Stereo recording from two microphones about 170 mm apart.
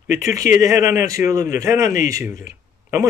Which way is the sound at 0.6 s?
20° right (ahead or behind).